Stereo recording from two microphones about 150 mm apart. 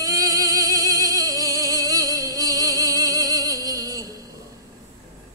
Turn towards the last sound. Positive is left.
turn(degrees=-20)  # may be behind; listen again after turning